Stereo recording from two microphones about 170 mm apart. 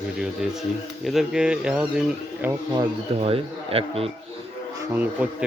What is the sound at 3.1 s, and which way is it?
Speech, 35° right (ahead or behind).